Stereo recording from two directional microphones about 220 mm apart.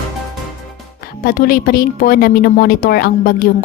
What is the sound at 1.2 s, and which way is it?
A woman's voice, 40° left (ahead or behind).